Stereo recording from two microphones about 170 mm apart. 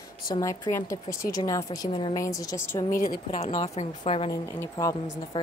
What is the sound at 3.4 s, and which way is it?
Speech, 35° left (ahead or behind).